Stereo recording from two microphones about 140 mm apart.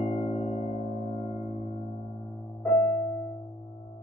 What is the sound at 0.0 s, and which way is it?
Singing bowl, 45° left (ahead or behind).